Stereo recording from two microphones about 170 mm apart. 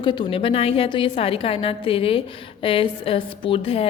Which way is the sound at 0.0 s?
30° left (ahead or behind).